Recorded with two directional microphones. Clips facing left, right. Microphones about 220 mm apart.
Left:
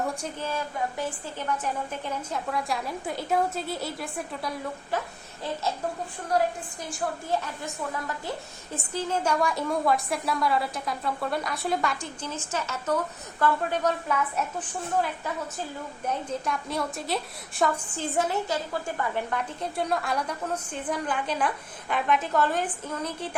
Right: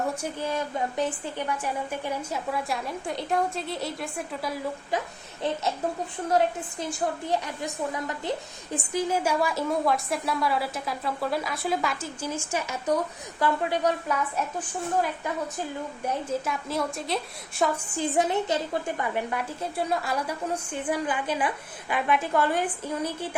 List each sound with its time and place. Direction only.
0.2 s a woman's voice: 15° right (ahead or behind)
7.3 s a woman's voice: 15° right (ahead or behind)
16.0 s a woman's voice: centre (ahead or behind)
17.9 s a woman's voice: 15° right (ahead or behind)
19.7 s a woman's voice: centre (ahead or behind)